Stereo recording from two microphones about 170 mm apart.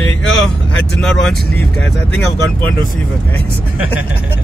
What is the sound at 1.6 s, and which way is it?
Speech, 10° left (ahead or behind).